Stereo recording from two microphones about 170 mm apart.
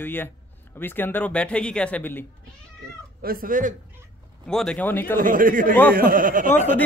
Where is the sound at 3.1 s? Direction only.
60° right (ahead or behind).